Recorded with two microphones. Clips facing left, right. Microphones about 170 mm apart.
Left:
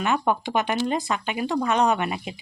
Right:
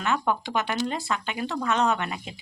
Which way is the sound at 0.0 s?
15° left (ahead or behind).